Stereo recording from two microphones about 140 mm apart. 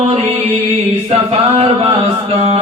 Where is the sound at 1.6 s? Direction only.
45° right (ahead or behind).